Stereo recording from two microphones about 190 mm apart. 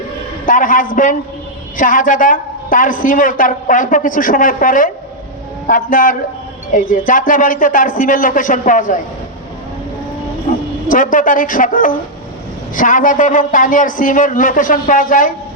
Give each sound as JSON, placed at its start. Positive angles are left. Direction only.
{"t": 0.4, "sound": "a woman's voice", "side_deg": 45}
{"t": 10.8, "sound": "a woman's voice", "side_deg": 45}